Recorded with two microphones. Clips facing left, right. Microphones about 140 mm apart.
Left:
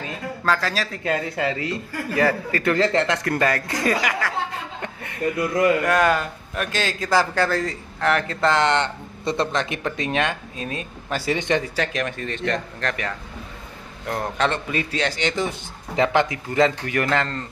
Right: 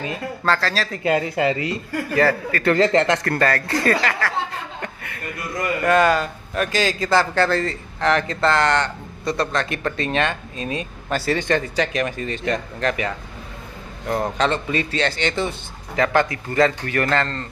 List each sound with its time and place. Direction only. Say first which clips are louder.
0.5 s a man's voice: right 1 dB; 10° left (ahead or behind)
0.9 s a man's voice: right 4 dB; 5° right (ahead or behind); by 4.3 s 10° left (ahead or behind)
4.8 s chuckle: even; 20° left (ahead or behind)
5.9 s a man's voice: right 3 dB; 5° left (ahead or behind)
10.7 s speech: right 4 dB; centre (ahead or behind)
11.1 s a man's voice: right 1 dB; 15° left (ahead or behind)
11.6 s speech: right 3 dB; centre (ahead or behind)
14.9 s a man's voice: right 2 dB; 10° left (ahead or behind)